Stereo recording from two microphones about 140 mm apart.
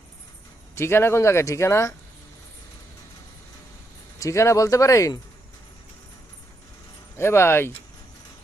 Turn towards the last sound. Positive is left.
turn(degrees=15)  # may be behind; listen again after turning